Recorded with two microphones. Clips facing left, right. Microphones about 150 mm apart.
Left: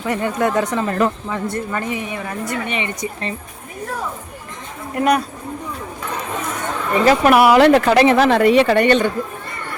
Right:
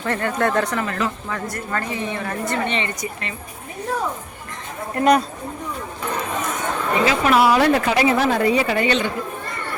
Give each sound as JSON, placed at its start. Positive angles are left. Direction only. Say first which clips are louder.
{"t": 0.0, "sound": "speech", "louder": "left 2 dB", "side_deg": 15}
{"t": 0.9, "sound": "speech", "louder": "left 6 dB", "side_deg": 45}
{"t": 1.3, "sound": "speech", "louder": "left 5 dB", "side_deg": 25}
{"t": 1.7, "sound": "speech", "louder": "left 1 dB", "side_deg": 15}
{"t": 3.0, "sound": "speech", "louder": "left 4 dB", "side_deg": 35}
{"t": 4.9, "sound": "speech", "louder": "right 1 dB", "side_deg": 10}
{"t": 7.0, "sound": "a woman's voice", "louder": "left 5 dB", "side_deg": 50}